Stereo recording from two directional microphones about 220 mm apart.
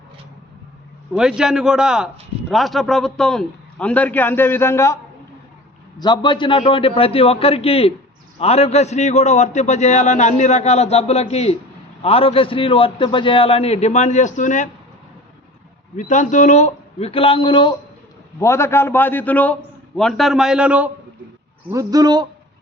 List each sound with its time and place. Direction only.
1.1 s a man's voice: 5° right (ahead or behind)
6.0 s a man's voice: 20° left (ahead or behind); by 14.7 s 35° left (ahead or behind)
16.0 s a man's voice: 35° left (ahead or behind); by 22.3 s 20° right (ahead or behind)